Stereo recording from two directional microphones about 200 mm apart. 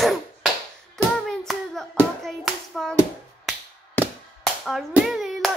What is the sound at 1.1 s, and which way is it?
Hands, centre (ahead or behind).